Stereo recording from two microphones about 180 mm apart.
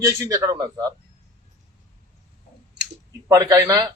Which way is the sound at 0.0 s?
20° right (ahead or behind).